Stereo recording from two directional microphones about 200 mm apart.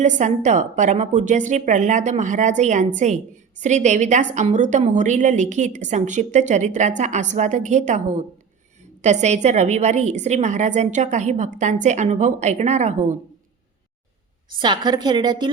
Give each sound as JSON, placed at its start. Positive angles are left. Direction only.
{"t": 0.0, "sound": "a woman's voice", "side_deg": -35}
{"t": 14.6, "sound": "a woman's voice", "side_deg": -20}